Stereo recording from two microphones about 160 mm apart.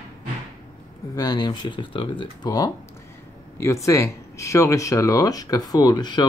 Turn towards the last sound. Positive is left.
turn(degrees=25)  # may be behind; listen again after turning